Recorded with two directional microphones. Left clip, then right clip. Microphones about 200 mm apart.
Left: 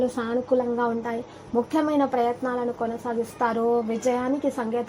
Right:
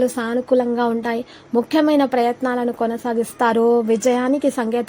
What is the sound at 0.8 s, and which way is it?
A woman's voice, 35° right (ahead or behind).